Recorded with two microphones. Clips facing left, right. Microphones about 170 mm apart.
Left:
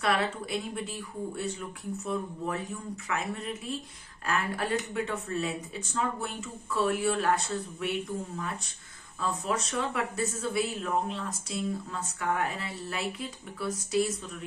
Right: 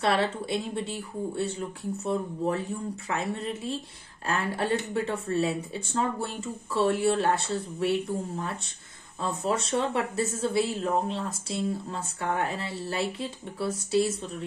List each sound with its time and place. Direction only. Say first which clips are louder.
0.0 s speech: right 3 dB; 30° right (ahead or behind)
9.2 s speech: right 3 dB; 30° right (ahead or behind)